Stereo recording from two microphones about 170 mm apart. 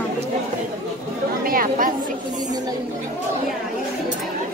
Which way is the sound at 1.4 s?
55° right (ahead or behind).